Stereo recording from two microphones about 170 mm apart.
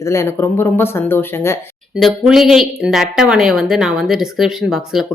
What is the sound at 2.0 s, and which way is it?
Speech, centre (ahead or behind).